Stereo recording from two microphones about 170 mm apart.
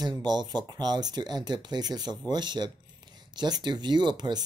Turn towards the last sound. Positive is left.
turn(degrees=-25)  # may be behind; listen again after turning